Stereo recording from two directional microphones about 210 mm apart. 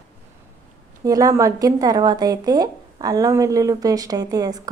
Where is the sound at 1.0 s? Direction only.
15° right (ahead or behind).